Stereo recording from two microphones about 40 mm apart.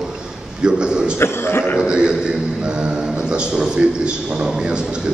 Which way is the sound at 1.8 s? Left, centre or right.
Right.